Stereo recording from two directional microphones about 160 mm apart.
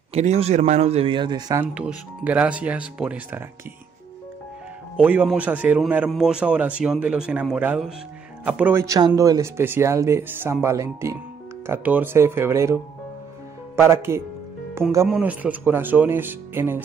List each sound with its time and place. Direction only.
0.1 s a man's voice: 40° right (ahead or behind)
1.6 s speech: 5° right (ahead or behind)
4.9 s speech: 10° right (ahead or behind)
13.7 s speech: 15° right (ahead or behind)
15.0 s speech: 5° right (ahead or behind)